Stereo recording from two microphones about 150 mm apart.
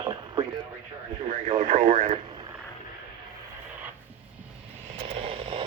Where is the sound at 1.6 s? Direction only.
50° right (ahead or behind).